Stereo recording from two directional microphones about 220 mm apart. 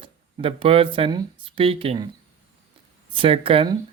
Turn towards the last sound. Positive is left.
turn(degrees=-25)  # may be behind; listen again after turning